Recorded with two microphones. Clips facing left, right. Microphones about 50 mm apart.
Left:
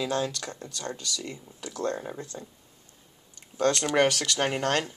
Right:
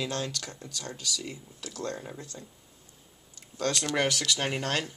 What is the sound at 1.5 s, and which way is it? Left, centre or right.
Speech, left.